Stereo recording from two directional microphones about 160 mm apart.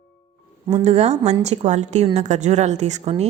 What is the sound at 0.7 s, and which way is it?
A woman's voice, 40° right (ahead or behind).